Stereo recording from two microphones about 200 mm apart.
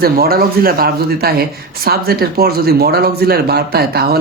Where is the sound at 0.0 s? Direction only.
50° right (ahead or behind).